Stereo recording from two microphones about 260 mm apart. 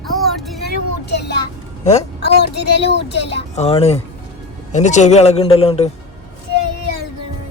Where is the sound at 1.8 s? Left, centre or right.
Left.